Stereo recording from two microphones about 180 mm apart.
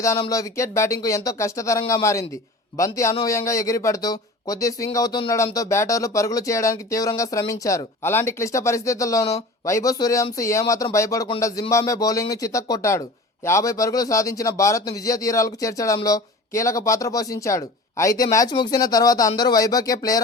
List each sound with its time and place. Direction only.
0.3 s speech: 20° left (ahead or behind)